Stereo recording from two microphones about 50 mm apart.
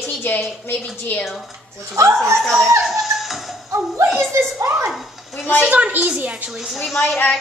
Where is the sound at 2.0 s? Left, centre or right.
Right.